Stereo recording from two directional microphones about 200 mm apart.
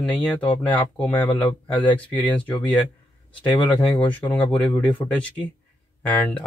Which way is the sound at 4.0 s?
5° left (ahead or behind).